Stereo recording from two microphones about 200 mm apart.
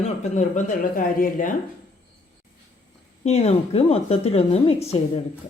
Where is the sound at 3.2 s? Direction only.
30° left (ahead or behind).